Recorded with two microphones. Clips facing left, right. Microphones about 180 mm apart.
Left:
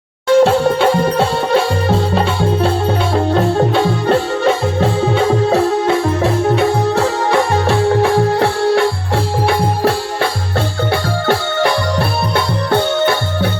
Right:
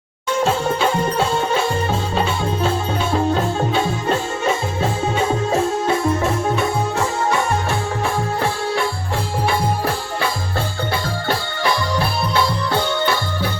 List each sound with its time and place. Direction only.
0.3 s music: 70° left (ahead or behind)
3.8 s music: 65° left (ahead or behind)
11.3 s music: 65° left (ahead or behind)